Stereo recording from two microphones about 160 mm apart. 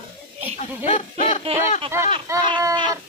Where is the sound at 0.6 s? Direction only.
45° left (ahead or behind).